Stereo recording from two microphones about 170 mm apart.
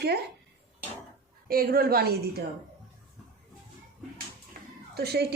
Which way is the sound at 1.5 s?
60° right (ahead or behind).